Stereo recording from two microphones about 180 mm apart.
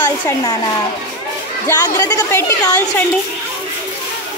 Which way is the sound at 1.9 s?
20° left (ahead or behind).